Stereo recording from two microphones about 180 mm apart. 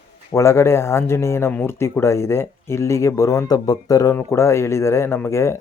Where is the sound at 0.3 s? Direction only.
15° left (ahead or behind).